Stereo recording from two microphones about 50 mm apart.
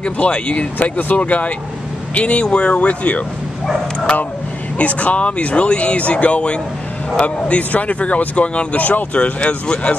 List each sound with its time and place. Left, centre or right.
0.0 s speech: left
0.7 s speech: left
4.7 s speech: left